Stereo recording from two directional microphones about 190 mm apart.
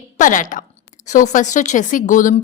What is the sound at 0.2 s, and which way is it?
Speech, 45° left (ahead or behind).